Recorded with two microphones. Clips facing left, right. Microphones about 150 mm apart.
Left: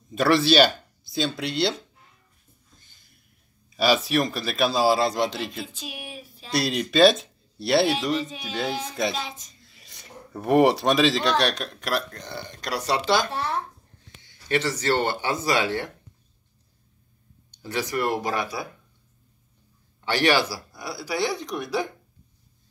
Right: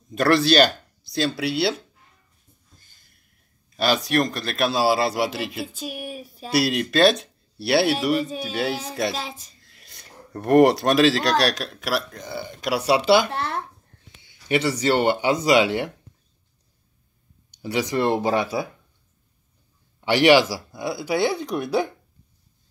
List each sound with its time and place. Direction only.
0.1 s speech: centre (ahead or behind)
3.7 s speech: centre (ahead or behind)
5.8 s speech: 45° right (ahead or behind)
6.5 s speech: 5° right (ahead or behind)
9.1 s speech: 40° right (ahead or behind)
9.7 s speech: centre (ahead or behind)
13.3 s a child's voice: 60° right (ahead or behind)
14.2 s speech: 10° right (ahead or behind)
17.5 s speech: 15° right (ahead or behind)
20.1 s speech: 20° right (ahead or behind)